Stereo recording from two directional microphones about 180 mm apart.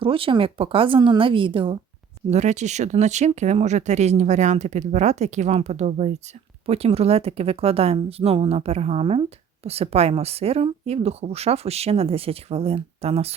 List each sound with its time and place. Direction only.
0.0 s a woman's voice: 30° right (ahead or behind)
2.3 s speech: 40° right (ahead or behind)